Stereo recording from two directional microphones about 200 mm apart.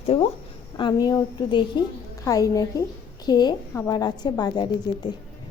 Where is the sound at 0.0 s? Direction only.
30° left (ahead or behind).